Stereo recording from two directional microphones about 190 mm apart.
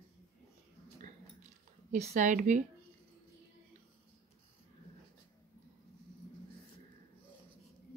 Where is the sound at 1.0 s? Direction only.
40° right (ahead or behind).